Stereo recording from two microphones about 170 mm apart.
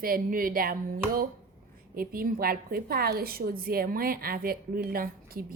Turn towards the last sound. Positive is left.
turn(degrees=-60)  # may be behind; listen again after turning